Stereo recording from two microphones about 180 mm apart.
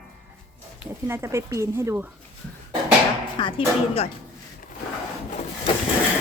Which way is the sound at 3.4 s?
30° left (ahead or behind).